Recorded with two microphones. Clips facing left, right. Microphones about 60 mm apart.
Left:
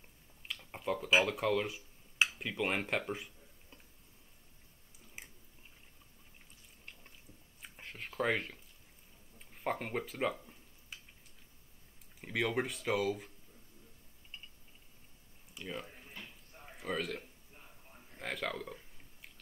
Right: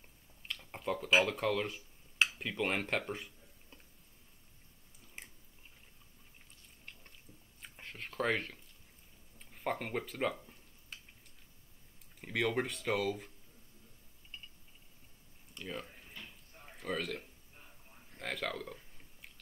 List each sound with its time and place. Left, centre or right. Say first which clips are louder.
0.4 s speech: even; centre
5.2 s biting: even; centre
6.9 s squish: even; centre
7.6 s a sound: even; centre
12.2 s speech: even; centre
15.5 s speech: even; centre
16.0 s a sound: left 1 dB; left
16.6 s speech: even; centre
18.1 s a sound: even; centre